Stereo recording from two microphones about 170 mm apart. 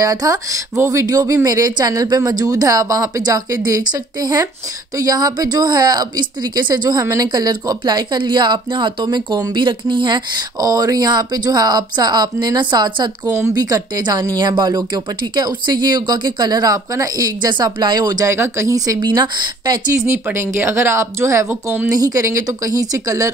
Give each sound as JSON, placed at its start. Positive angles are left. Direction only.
{"t": 0.0, "sound": "a woman's voice", "side_deg": -20}
{"t": 13.2, "sound": "a woman's voice", "side_deg": -15}
{"t": 20.0, "sound": "a woman's voice", "side_deg": -10}